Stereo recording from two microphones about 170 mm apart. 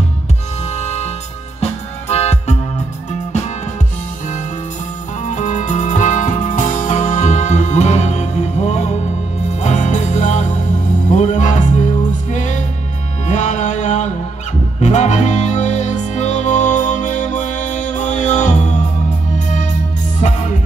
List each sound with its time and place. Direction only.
0.7 s music: 40° left (ahead or behind)
5.2 s music: 45° left (ahead or behind)